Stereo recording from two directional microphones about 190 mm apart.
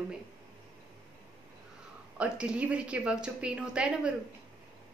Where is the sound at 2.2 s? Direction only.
5° right (ahead or behind).